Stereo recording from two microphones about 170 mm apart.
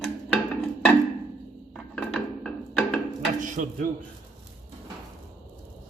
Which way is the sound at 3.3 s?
50° right (ahead or behind).